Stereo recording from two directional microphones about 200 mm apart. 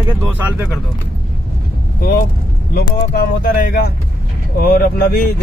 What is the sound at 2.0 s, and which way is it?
Speech, 45° left (ahead or behind).